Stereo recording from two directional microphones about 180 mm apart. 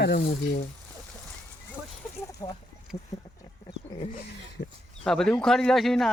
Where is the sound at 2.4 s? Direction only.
25° left (ahead or behind).